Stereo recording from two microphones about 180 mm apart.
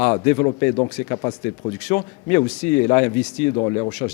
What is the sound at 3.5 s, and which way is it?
Speech, 25° left (ahead or behind).